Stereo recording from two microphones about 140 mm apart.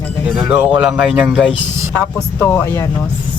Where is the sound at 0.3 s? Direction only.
5° right (ahead or behind).